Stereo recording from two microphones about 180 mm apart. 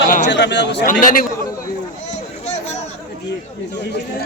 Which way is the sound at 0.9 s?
50° left (ahead or behind).